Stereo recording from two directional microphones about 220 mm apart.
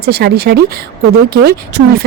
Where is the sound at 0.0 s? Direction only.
45° right (ahead or behind).